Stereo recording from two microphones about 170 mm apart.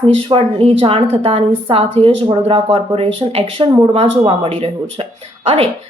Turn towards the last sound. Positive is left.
turn(degrees=-35)  # may be behind; listen again after turning